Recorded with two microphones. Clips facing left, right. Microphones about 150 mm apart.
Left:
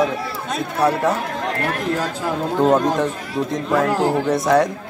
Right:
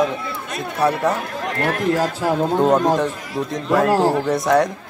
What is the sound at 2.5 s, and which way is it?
Speech, centre (ahead or behind).